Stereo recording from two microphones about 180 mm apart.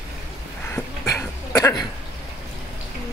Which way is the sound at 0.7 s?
15° left (ahead or behind).